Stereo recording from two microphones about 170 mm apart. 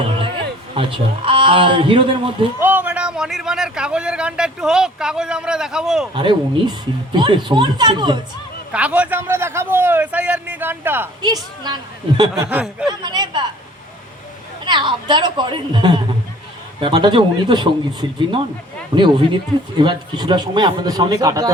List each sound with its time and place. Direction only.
0.7 s a man's voice: 30° right (ahead or behind)
2.6 s a man's voice: 10° right (ahead or behind)
6.1 s speech: 25° right (ahead or behind)
8.7 s a man's voice: 10° right (ahead or behind)
11.2 s speech: 25° right (ahead or behind)
12.5 s a man's voice: 5° right (ahead or behind)
12.9 s speech: 25° right (ahead or behind)
14.6 s speech: 30° right (ahead or behind)
18.9 s speech: 25° right (ahead or behind)